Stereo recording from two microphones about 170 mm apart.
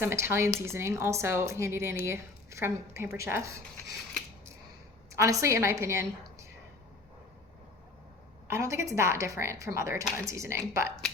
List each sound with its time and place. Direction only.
0.0 s speech: 15° right (ahead or behind)
5.1 s speech: 15° right (ahead or behind)
8.4 s speech: 15° right (ahead or behind)